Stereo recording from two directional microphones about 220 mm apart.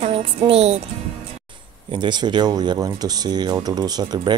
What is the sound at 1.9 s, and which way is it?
Speech, 20° right (ahead or behind).